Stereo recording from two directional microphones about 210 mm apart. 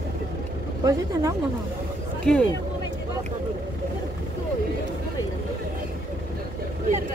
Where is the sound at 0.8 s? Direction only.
15° right (ahead or behind).